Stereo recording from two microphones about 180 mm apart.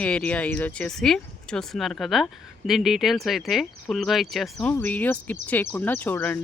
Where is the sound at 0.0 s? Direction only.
5° left (ahead or behind).